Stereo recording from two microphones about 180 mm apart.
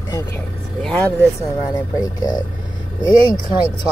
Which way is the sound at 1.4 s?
20° left (ahead or behind).